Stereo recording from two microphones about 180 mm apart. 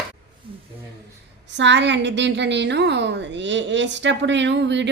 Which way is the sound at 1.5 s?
80° right.